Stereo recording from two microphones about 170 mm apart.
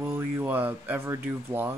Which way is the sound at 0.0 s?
15° right (ahead or behind).